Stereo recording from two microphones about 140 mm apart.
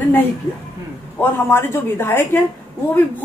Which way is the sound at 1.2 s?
15° left (ahead or behind).